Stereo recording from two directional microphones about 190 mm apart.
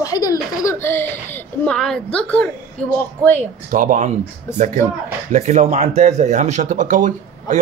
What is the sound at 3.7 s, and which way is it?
Speech, 45° right (ahead or behind).